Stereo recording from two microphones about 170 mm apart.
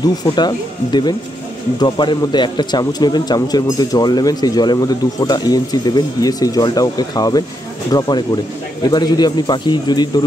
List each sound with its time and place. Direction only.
0.0 s a man's voice: 25° left (ahead or behind)